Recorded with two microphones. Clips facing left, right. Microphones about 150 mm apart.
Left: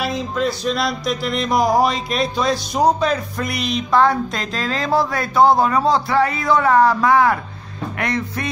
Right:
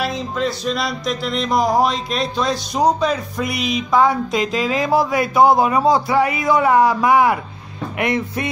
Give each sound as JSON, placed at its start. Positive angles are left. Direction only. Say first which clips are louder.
{"t": 0.0, "sound": "music", "louder": "left 1 dB", "side_deg": 0}
{"t": 8.0, "sound": "speech", "louder": "right 3 dB", "side_deg": -20}